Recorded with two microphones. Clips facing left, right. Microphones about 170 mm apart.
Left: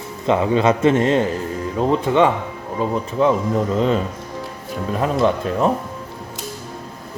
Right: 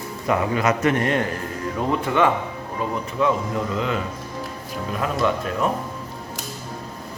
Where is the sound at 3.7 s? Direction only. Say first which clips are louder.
Left 7 dB; 35° left (ahead or behind).